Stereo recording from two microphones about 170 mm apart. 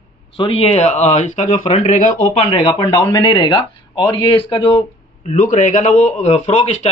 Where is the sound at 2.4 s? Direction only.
20° left (ahead or behind).